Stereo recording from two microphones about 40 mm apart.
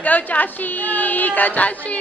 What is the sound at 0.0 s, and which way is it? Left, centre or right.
A woman's voice, left.